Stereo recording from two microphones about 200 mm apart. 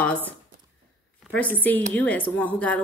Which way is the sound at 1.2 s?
5° left (ahead or behind).